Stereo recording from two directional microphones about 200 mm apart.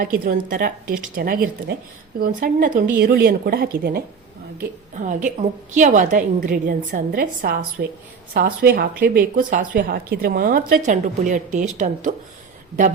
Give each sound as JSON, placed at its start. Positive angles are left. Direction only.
{"t": 0.0, "sound": "a woman's voice", "side_deg": -45}